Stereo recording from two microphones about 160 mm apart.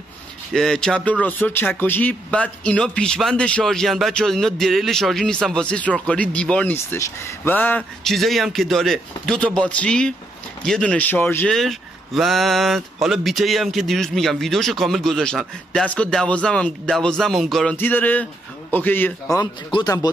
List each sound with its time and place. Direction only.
0.5 s speech: 5° left (ahead or behind)
11.5 s speech: centre (ahead or behind)
17.7 s speech: 10° left (ahead or behind)
19.4 s speech: 25° left (ahead or behind)